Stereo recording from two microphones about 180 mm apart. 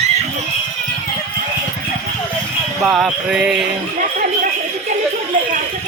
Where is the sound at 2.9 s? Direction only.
Centre (ahead or behind).